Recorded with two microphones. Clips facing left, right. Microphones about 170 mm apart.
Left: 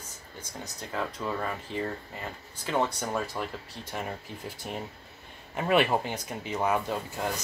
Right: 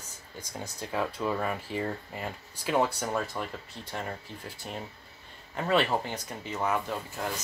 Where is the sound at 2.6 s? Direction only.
10° right (ahead or behind).